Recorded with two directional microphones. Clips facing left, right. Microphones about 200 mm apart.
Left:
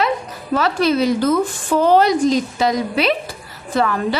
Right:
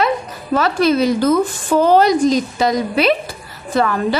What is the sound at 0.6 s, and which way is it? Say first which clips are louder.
A woman's voice: right 2 dB; 45° right (ahead or behind).